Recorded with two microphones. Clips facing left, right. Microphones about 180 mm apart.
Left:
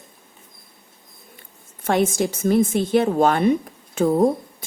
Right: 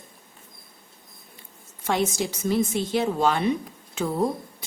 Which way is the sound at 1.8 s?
50° left (ahead or behind).